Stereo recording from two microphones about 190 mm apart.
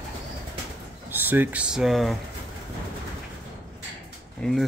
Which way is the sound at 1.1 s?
10° right (ahead or behind).